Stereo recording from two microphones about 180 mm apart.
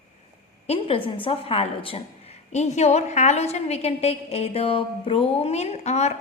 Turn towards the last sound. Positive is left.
turn(degrees=40)  # may be behind; listen again after turning